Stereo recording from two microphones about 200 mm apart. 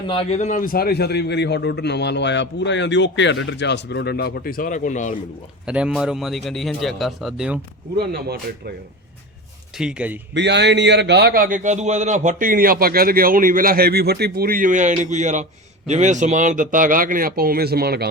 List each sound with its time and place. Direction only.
0.1 s a man's voice: 30° left (ahead or behind)
5.6 s a man's voice: 5° right (ahead or behind)
7.9 s a man's voice: 55° right (ahead or behind)
9.7 s a man's voice: 5° right (ahead or behind)
10.3 s a man's voice: 60° right (ahead or behind)